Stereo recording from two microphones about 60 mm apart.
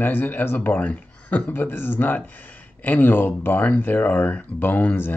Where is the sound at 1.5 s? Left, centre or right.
Left.